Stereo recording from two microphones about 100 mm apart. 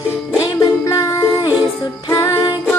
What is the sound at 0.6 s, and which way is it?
Music, 35° left (ahead or behind).